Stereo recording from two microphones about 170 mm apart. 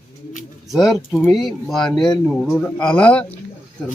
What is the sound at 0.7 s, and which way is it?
A man's voice, centre (ahead or behind).